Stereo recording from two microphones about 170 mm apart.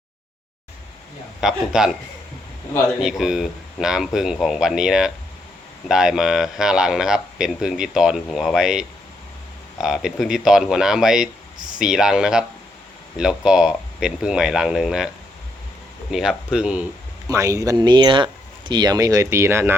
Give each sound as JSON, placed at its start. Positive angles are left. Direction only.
{"t": 1.4, "sound": "speech", "side_deg": -5}
{"t": 3.0, "sound": "speech", "side_deg": -5}
{"t": 16.1, "sound": "speech", "side_deg": -5}
{"t": 17.2, "sound": "speech", "side_deg": -20}